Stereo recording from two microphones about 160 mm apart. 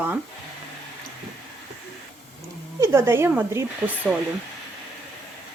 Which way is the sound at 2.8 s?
15° right (ahead or behind).